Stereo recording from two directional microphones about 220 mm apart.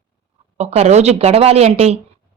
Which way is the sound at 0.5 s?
30° right (ahead or behind).